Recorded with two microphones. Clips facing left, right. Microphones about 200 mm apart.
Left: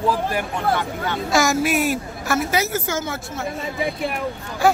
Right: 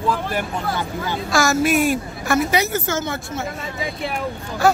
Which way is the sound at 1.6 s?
5° left (ahead or behind).